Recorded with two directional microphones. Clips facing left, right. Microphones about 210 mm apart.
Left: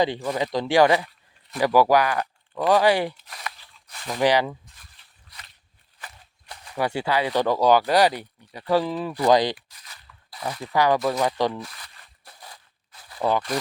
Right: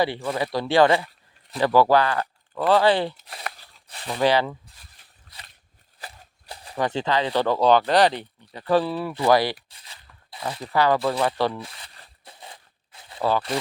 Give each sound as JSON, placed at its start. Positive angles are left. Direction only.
{"t": 0.0, "sound": "speech", "side_deg": 15}
{"t": 3.8, "sound": "a sound", "side_deg": -30}
{"t": 4.2, "sound": "speech", "side_deg": 15}
{"t": 6.0, "sound": "walk", "side_deg": -35}
{"t": 6.7, "sound": "speech", "side_deg": 10}
{"t": 9.6, "sound": "crunch", "side_deg": -30}
{"t": 10.6, "sound": "speech", "side_deg": 15}
{"t": 11.6, "sound": "a sound", "side_deg": -30}